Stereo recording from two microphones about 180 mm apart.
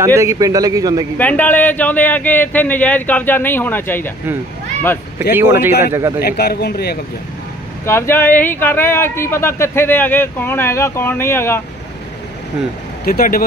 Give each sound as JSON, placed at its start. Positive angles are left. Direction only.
{"t": 0.0, "sound": "a man's voice", "side_deg": -15}
{"t": 1.1, "sound": "speech", "side_deg": 10}
{"t": 5.3, "sound": "speech", "side_deg": -15}
{"t": 6.2, "sound": "speech", "side_deg": 60}
{"t": 7.8, "sound": "speech", "side_deg": 15}
{"t": 13.0, "sound": "speech", "side_deg": 55}